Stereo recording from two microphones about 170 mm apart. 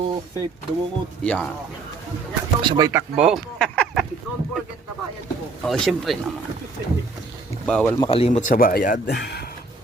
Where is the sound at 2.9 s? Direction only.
15° right (ahead or behind).